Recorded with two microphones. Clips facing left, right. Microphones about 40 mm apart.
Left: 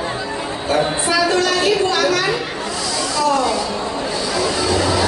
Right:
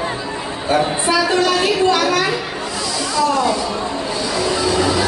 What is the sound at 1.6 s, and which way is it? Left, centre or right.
Speech, centre.